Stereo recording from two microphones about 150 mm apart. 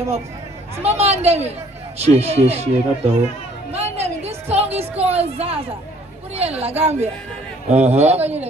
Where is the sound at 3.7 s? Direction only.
45° right (ahead or behind).